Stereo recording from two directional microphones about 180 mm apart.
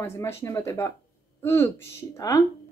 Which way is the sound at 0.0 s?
15° left (ahead or behind).